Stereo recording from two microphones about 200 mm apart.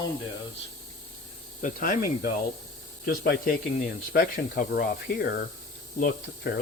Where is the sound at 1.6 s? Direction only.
40° left (ahead or behind).